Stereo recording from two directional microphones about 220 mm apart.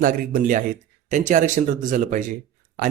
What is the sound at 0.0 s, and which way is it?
Speech, 40° right (ahead or behind).